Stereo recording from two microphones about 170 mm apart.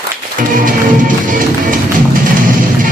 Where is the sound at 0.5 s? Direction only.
50° right (ahead or behind).